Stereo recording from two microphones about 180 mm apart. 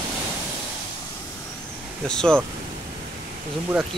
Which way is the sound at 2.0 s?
5° left (ahead or behind).